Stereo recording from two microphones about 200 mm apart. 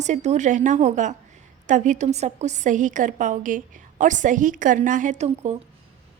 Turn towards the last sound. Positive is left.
turn(degrees=-35)  # may be behind; listen again after turning